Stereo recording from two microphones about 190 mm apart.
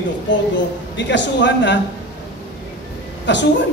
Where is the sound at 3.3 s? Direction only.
70° left (ahead or behind).